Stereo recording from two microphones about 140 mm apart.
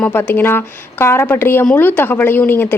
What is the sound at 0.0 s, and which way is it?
Speech, 10° left (ahead or behind).